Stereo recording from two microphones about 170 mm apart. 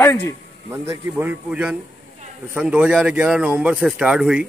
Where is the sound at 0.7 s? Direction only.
10° right (ahead or behind).